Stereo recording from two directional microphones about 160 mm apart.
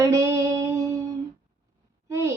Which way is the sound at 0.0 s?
20° right (ahead or behind).